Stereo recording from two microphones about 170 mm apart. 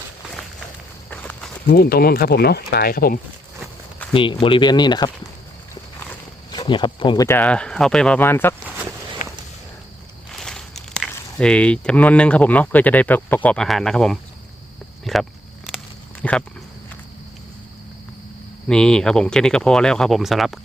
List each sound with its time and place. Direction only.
1.1 s walk: 10° left (ahead or behind)
1.6 s speech: 65° left (ahead or behind)
4.1 s speech: 30° left (ahead or behind)
6.5 s speech: 25° left (ahead or behind)
7.3 s speech: 10° left (ahead or behind)
9.2 s a sound: 50° left (ahead or behind)
10.3 s speech: 5° left (ahead or behind)
15.0 s a sound: centre (ahead or behind)
16.2 s speech: 5° left (ahead or behind)
18.7 s speech: 5° left (ahead or behind)